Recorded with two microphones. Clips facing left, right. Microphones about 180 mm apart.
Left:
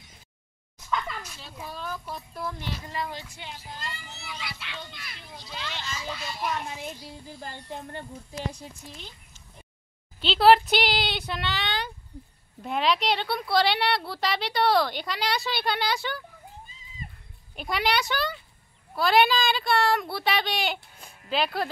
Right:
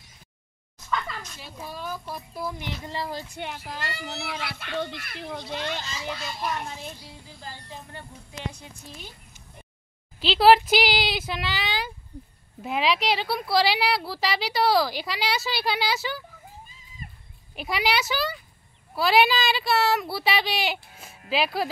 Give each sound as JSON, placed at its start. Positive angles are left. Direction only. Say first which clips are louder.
{"t": 0.8, "sound": "a sound", "louder": "even", "side_deg": 10}
{"t": 1.4, "sound": "speech", "louder": "right 3 dB", "side_deg": -10}
{"t": 2.8, "sound": "speech", "louder": "right 4 dB", "side_deg": -30}
{"t": 3.3, "sound": "a child's voice", "louder": "right 6 dB", "side_deg": -65}
{"t": 7.4, "sound": "speech", "louder": "left 3 dB", "side_deg": 55}
{"t": 10.2, "sound": "speech", "louder": "right 1 dB", "side_deg": -5}
{"t": 17.6, "sound": "speech", "louder": "right 1 dB", "side_deg": -5}